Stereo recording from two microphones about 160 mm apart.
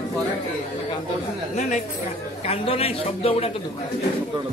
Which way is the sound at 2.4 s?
40° left (ahead or behind).